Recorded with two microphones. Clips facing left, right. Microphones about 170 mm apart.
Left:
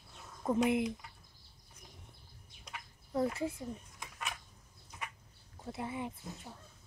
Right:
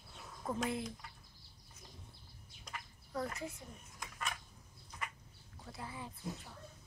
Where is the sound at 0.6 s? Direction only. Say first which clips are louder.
Left 8 dB; 20° left (ahead or behind).